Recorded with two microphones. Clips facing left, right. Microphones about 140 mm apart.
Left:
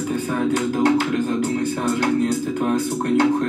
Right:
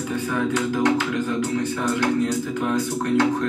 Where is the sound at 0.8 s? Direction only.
50° left (ahead or behind).